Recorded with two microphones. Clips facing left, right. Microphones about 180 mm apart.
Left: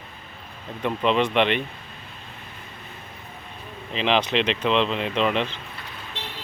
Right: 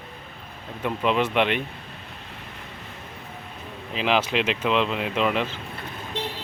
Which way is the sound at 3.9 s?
5° right (ahead or behind).